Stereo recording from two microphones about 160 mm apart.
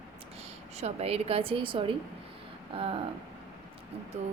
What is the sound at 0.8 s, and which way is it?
Speech, 40° right (ahead or behind).